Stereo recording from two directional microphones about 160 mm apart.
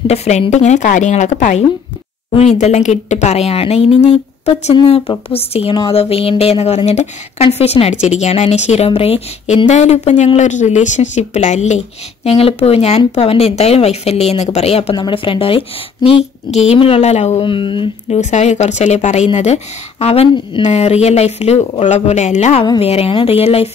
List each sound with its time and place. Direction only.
0.0 s speech: 40° left (ahead or behind)
18.2 s speech: 45° left (ahead or behind)